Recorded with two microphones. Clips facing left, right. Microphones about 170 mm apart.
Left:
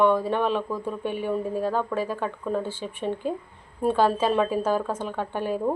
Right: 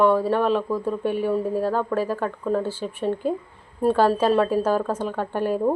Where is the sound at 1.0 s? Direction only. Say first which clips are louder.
Right 5 dB; 40° right (ahead or behind).